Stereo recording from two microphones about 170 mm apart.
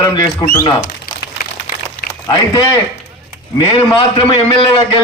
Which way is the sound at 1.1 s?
65° left (ahead or behind).